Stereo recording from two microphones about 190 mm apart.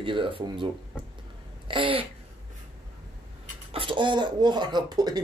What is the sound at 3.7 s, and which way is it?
Speech, 25° right (ahead or behind).